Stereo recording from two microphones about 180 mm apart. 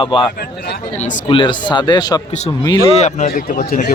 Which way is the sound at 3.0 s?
40° left (ahead or behind).